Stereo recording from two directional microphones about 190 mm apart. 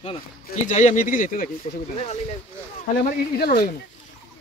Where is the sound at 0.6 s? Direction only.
40° left (ahead or behind).